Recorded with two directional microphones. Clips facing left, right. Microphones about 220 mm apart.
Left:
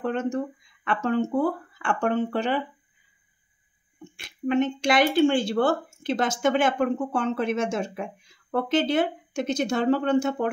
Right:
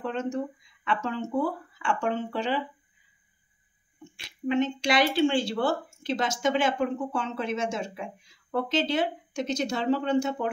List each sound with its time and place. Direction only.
0.0 s speech: 55° left (ahead or behind)
4.2 s speech: 50° left (ahead or behind)